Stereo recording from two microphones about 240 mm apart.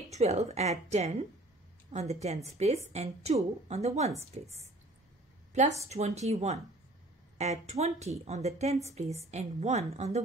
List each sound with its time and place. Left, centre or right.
0.1 s a woman's voice: right